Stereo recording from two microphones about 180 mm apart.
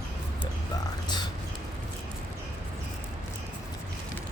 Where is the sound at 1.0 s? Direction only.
25° left (ahead or behind).